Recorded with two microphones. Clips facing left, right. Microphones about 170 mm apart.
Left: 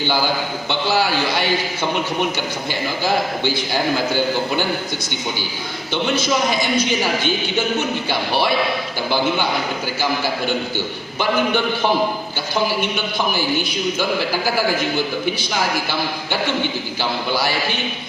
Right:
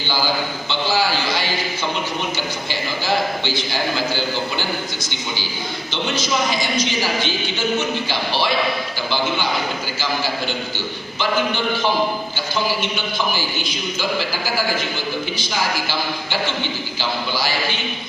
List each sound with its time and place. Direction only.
5.9 s a woman's voice: 55° left (ahead or behind)